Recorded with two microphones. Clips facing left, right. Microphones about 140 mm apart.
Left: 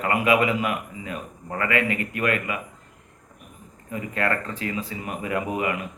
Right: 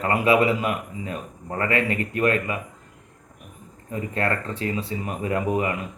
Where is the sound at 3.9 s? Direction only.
30° right (ahead or behind).